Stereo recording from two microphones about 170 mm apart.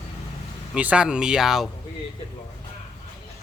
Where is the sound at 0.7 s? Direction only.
5° right (ahead or behind).